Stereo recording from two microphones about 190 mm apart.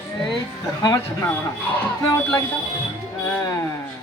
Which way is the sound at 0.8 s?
15° left (ahead or behind).